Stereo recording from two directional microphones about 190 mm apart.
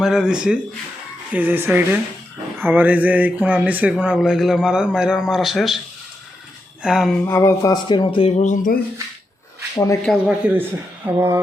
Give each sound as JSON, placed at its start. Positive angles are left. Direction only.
{"t": 0.0, "sound": "a man's voice", "side_deg": -5}
{"t": 6.8, "sound": "a man's voice", "side_deg": -5}
{"t": 7.3, "sound": "speech", "side_deg": 15}
{"t": 9.7, "sound": "speech", "side_deg": 15}
{"t": 10.1, "sound": "speech", "side_deg": -5}